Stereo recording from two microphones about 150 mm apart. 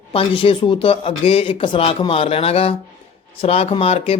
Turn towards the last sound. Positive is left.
turn(degrees=40)  # may be behind; listen again after turning